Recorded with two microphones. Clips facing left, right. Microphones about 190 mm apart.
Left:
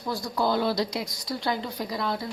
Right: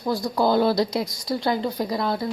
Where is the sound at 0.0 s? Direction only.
40° right (ahead or behind).